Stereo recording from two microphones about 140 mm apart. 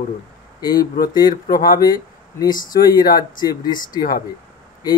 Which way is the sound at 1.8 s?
25° left (ahead or behind).